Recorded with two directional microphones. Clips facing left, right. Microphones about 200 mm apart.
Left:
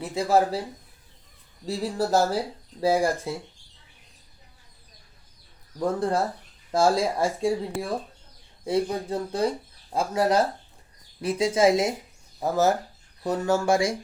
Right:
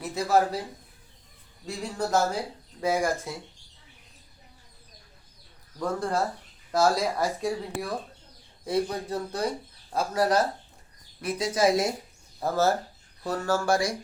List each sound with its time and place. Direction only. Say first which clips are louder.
0.0 s speech: left 2 dB; 30° left (ahead or behind)
1.6 s speech: left 4 dB; 35° left (ahead or behind)
5.8 s speech: left 3 dB; 25° left (ahead or behind)